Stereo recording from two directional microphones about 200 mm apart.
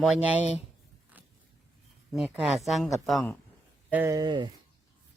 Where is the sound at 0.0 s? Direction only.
5° right (ahead or behind).